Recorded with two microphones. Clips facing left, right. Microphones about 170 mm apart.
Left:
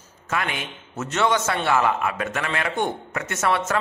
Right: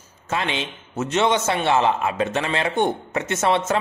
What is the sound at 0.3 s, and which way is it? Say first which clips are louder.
A man's voice: right 2 dB; 25° right (ahead or behind).